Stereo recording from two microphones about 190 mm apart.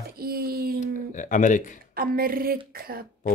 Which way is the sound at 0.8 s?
40° left (ahead or behind).